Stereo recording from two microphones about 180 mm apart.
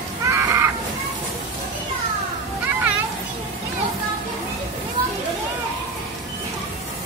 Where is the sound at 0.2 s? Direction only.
15° right (ahead or behind).